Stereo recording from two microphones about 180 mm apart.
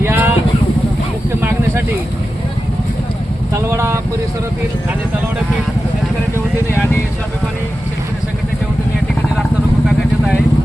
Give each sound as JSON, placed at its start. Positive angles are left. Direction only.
{"t": 0.0, "sound": "vehicle", "side_deg": -15}
{"t": 1.4, "sound": "a sound", "side_deg": -10}
{"t": 3.5, "sound": "vehicle", "side_deg": -15}